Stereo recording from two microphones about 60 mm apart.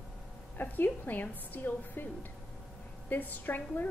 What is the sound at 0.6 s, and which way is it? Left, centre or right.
A woman's voice, left.